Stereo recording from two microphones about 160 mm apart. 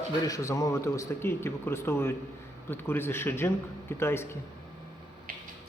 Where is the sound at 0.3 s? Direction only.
20° left (ahead or behind).